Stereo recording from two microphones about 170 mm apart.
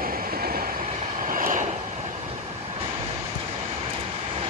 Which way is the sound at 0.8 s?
45° right (ahead or behind).